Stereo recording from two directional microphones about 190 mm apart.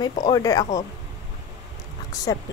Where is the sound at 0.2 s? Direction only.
20° left (ahead or behind).